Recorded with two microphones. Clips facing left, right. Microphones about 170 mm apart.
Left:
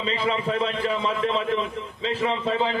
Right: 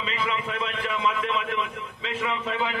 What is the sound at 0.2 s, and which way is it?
A man's voice, 35° left (ahead or behind).